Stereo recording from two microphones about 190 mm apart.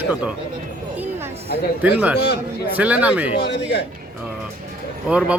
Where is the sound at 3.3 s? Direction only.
60° left (ahead or behind).